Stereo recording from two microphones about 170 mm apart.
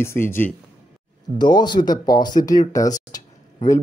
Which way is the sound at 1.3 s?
25° left (ahead or behind).